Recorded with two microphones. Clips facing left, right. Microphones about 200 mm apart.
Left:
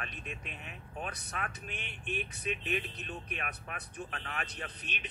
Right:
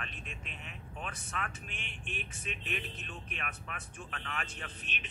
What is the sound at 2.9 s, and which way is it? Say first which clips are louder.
Speech: left 3 dB; 35° left (ahead or behind).